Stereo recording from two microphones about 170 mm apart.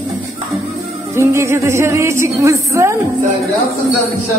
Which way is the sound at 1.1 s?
15° right (ahead or behind).